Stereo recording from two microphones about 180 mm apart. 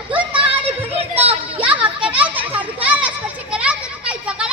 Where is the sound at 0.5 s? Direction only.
35° right (ahead or behind).